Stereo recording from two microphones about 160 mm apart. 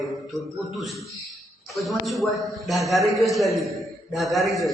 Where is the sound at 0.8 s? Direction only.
Centre (ahead or behind).